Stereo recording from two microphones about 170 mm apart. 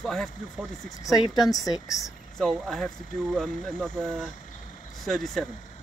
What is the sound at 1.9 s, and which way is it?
Speech, centre (ahead or behind).